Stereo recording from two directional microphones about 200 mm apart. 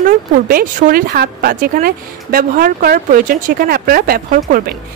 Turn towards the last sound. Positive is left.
turn(degrees=-45)  # may be behind; listen again after turning